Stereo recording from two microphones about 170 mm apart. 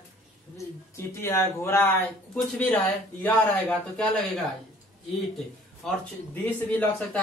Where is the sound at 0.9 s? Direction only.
15° left (ahead or behind).